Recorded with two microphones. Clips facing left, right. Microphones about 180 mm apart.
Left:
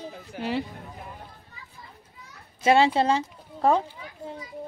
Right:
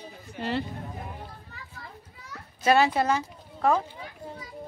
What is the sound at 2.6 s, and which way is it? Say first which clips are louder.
Speech: left 2 dB; 25° left (ahead or behind).